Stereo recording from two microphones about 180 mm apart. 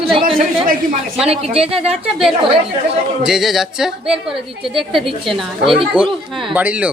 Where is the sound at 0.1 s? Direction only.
30° right (ahead or behind).